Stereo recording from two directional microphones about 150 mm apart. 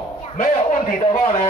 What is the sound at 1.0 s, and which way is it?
Speech, 45° left (ahead or behind).